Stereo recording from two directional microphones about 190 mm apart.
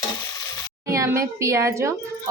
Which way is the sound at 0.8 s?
15° right (ahead or behind).